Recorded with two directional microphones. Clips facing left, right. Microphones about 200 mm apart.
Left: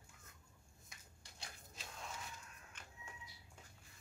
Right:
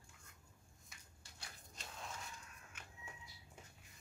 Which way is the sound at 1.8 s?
Centre (ahead or behind).